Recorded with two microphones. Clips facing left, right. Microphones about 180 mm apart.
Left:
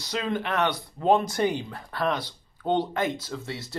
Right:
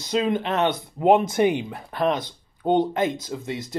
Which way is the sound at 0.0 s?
20° right (ahead or behind).